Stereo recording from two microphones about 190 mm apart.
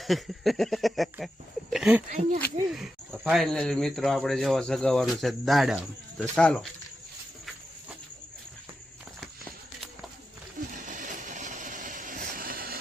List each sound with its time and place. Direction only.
0.0 s speech: centre (ahead or behind)
1.7 s a sound: 5° right (ahead or behind)
2.0 s speech: 35° right (ahead or behind)
2.6 s speech: centre (ahead or behind)
9.2 s walk: centre (ahead or behind)
10.7 s a sound: 45° right (ahead or behind)